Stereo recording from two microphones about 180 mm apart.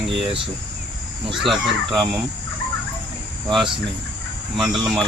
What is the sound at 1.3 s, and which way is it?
Speech, centre (ahead or behind).